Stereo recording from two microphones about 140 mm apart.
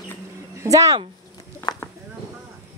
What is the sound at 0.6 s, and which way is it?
Speech, 25° right (ahead or behind).